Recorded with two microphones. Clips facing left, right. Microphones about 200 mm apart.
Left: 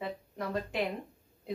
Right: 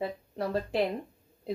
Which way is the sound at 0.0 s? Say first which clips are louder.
Right 4 dB; 30° right (ahead or behind).